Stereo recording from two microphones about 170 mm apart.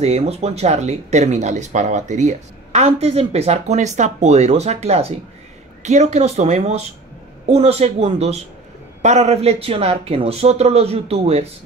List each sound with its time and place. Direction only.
0.0 s speech: 40° right (ahead or behind)